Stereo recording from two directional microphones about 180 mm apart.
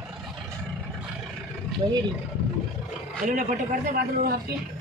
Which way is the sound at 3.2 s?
50° right (ahead or behind).